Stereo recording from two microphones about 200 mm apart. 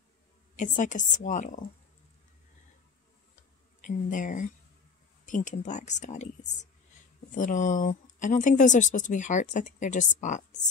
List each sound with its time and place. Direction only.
0.6 s speech: 40° left (ahead or behind)
3.8 s speech: 40° left (ahead or behind)